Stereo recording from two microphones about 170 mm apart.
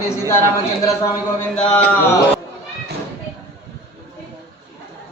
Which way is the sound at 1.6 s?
5° left (ahead or behind).